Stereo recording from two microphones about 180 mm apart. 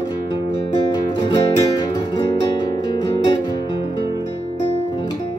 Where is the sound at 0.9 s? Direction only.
25° left (ahead or behind).